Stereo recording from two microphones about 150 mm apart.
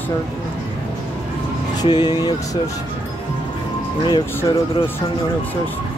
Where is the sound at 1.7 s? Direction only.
30° left (ahead or behind).